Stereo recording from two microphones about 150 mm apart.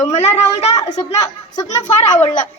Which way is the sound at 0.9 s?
25° left (ahead or behind).